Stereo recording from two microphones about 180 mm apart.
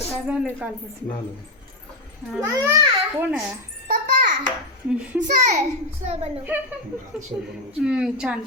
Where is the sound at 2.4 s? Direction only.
15° right (ahead or behind).